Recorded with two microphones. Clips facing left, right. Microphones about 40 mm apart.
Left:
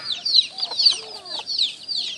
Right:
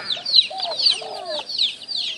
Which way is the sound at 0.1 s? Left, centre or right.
Right.